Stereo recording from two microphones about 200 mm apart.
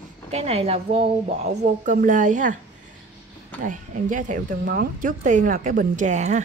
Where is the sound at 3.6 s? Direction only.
40° right (ahead or behind).